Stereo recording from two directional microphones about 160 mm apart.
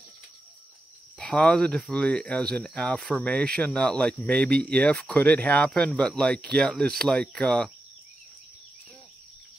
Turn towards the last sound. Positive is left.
turn(degrees=5)  # may be behind; listen again after turning